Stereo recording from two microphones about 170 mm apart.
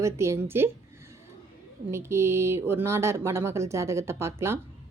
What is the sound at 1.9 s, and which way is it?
A woman's voice, 15° right (ahead or behind).